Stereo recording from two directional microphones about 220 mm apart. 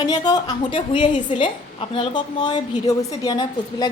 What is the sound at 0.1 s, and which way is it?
A woman's voice, 20° left (ahead or behind).